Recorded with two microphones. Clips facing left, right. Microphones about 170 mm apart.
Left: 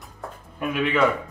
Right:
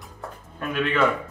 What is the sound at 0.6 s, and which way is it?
Speech, 10° left (ahead or behind).